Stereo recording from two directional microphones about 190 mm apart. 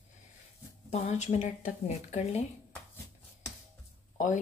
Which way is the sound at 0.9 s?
35° left (ahead or behind).